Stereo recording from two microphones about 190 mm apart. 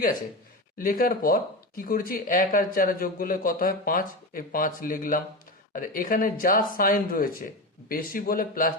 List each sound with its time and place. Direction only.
0.8 s speech: 50° left (ahead or behind)